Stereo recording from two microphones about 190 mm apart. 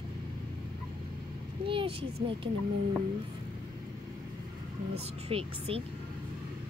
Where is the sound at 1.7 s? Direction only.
30° right (ahead or behind).